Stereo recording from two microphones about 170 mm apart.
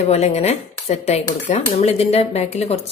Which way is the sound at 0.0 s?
40° left (ahead or behind).